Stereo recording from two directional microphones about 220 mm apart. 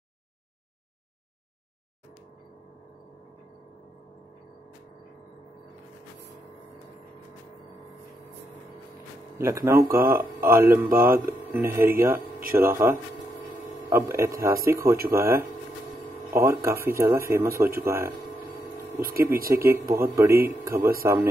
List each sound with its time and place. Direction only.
9.4 s speech: 10° right (ahead or behind)
18.9 s speech: 40° right (ahead or behind)
19.7 s speech: 10° right (ahead or behind)